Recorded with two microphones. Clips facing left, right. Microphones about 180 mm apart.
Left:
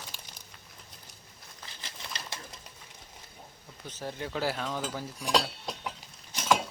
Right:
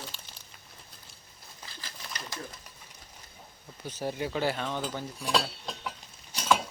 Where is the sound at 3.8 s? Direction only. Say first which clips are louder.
Right 5 dB; 10° right (ahead or behind).